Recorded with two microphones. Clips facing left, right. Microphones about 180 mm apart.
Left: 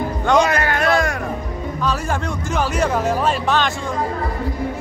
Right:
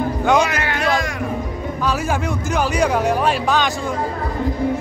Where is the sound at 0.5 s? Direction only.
45° left (ahead or behind).